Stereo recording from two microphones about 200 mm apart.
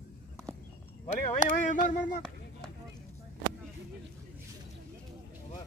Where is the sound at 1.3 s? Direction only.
40° left (ahead or behind).